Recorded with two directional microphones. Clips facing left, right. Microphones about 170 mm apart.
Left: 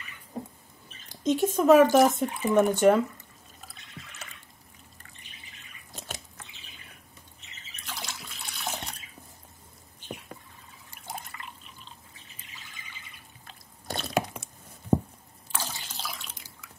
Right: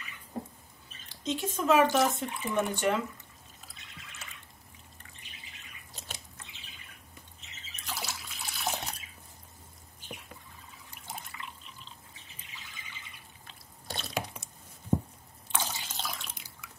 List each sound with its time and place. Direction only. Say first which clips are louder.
1.2 s speech: left 8 dB; 45° left (ahead or behind)
7.8 s bathtub: right 1 dB; 5° right (ahead or behind)
11.3 s drip: even; 55° left (ahead or behind)
13.8 s drip: left 7 dB; 50° left (ahead or behind)
15.5 s water: right 1 dB; centre (ahead or behind)